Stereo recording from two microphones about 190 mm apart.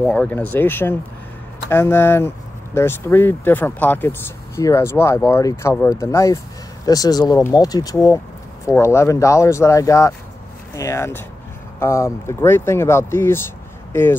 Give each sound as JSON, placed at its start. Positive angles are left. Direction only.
{"t": 0.0, "sound": "speech", "side_deg": 5}